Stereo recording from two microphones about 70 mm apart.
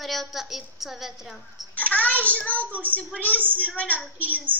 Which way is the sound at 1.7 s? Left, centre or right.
Centre.